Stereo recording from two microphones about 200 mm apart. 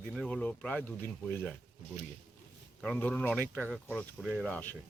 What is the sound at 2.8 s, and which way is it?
Speech, 5° left (ahead or behind).